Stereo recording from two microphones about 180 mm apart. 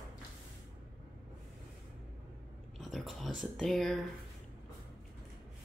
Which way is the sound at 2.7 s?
Centre (ahead or behind).